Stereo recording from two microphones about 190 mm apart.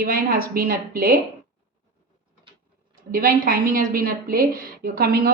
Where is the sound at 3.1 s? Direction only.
50° right (ahead or behind).